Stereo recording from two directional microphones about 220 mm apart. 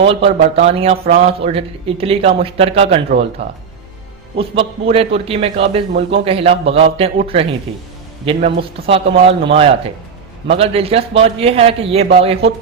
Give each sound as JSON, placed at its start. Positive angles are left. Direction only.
{"t": 0.0, "sound": "a man's voice", "side_deg": -25}